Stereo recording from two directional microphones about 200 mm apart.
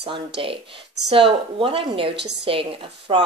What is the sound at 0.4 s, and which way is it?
Speech, 25° right (ahead or behind).